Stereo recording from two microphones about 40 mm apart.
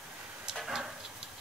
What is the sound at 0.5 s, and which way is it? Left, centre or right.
Tick-tock, centre.